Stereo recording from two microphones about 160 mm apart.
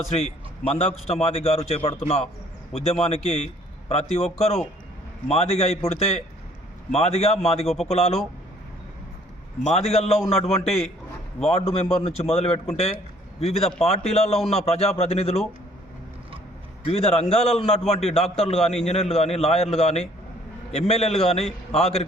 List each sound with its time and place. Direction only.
0.1 s a man's voice: 45° left (ahead or behind)
9.6 s a man's voice: 40° left (ahead or behind)
16.8 s a man's voice: 40° left (ahead or behind)
18.6 s a man's voice: centre (ahead or behind)
18.9 s a man's voice: 40° left (ahead or behind)